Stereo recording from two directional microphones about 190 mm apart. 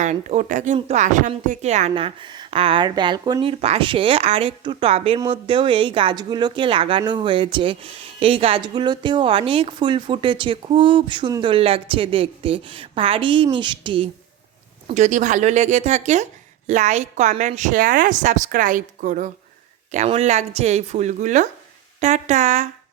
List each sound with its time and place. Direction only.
0.0 s a woman's voice: 40° right (ahead or behind)
1.9 s speech: 25° right (ahead or behind)
14.8 s a woman's voice: 40° right (ahead or behind)